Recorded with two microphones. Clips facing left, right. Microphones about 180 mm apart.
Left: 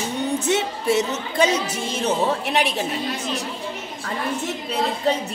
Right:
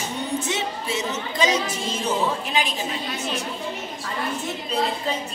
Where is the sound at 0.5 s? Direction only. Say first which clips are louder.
Left 7 dB; 60° left (ahead or behind).